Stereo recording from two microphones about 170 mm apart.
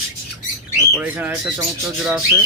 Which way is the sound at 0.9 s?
5° right (ahead or behind).